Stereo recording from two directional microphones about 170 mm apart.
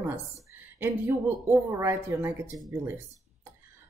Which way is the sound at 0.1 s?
15° right (ahead or behind).